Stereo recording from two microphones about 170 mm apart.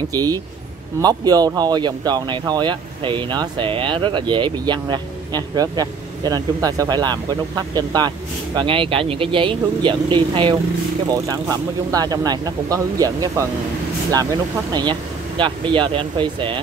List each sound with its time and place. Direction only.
0.1 s speech: 20° right (ahead or behind)